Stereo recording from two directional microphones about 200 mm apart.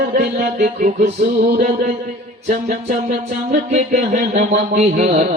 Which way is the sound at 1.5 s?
50° right (ahead or behind).